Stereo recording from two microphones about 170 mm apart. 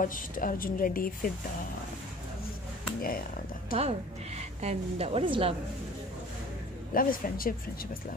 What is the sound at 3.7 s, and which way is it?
A woman's voice, 40° right (ahead or behind).